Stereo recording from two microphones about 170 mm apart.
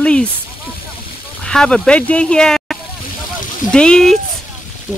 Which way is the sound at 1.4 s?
5° left (ahead or behind).